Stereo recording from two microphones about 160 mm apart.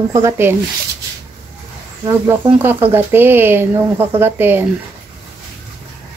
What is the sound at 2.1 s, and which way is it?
Speech, 15° right (ahead or behind).